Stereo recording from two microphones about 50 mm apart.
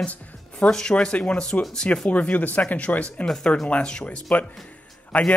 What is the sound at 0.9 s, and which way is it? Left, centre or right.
Speech, left.